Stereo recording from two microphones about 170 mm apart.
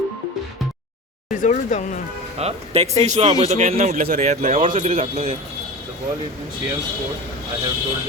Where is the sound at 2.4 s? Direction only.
40° right (ahead or behind).